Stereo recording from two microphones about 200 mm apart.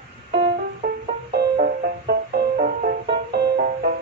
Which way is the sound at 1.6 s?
50° right (ahead or behind).